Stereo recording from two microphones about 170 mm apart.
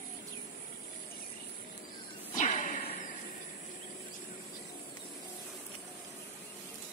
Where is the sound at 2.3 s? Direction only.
45° left (ahead or behind).